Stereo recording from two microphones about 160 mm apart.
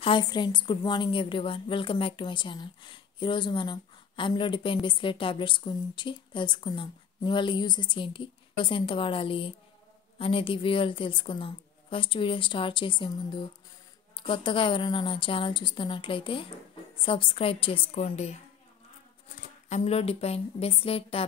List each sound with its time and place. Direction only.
0.0 s a woman's voice: 30° left (ahead or behind); by 18.4 s 45° left (ahead or behind)
19.7 s a woman's voice: 40° left (ahead or behind)